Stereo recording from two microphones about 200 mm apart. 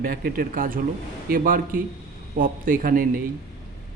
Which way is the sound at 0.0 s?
45° right (ahead or behind).